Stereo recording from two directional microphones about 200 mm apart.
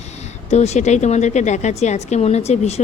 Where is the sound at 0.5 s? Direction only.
35° left (ahead or behind).